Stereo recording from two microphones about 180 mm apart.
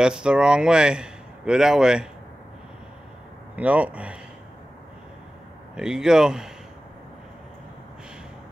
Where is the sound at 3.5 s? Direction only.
10° right (ahead or behind).